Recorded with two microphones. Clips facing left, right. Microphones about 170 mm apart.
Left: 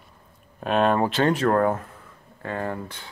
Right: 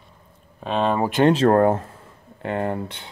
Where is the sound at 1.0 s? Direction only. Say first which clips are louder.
Right 3 dB; 15° right (ahead or behind).